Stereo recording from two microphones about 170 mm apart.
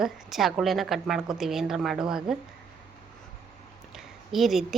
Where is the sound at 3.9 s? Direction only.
Centre (ahead or behind).